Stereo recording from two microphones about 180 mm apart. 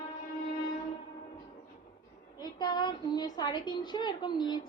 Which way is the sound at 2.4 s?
25° left (ahead or behind).